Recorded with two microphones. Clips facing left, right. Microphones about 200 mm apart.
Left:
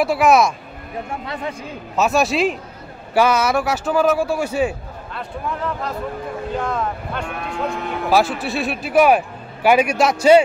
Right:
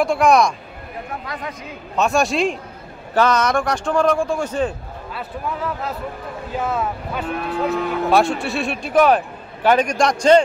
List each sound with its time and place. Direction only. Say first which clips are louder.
0.0 s speech: even; 5° left (ahead or behind)
1.2 s speech: left 3 dB; 30° left (ahead or behind)
2.0 s a man's voice: left 1 dB; 5° left (ahead or behind)
5.1 s speech: even; 5° right (ahead or behind)